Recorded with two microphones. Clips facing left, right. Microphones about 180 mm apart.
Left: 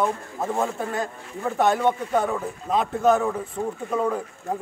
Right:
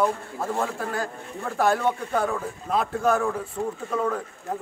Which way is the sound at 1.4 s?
5° right (ahead or behind).